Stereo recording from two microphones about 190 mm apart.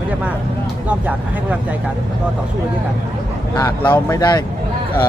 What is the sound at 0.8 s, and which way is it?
Speech, 5° right (ahead or behind).